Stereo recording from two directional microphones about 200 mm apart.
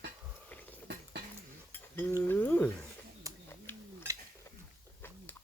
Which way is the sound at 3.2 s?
15° right (ahead or behind).